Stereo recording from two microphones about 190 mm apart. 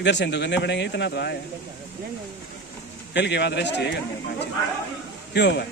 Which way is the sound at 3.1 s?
65° left (ahead or behind).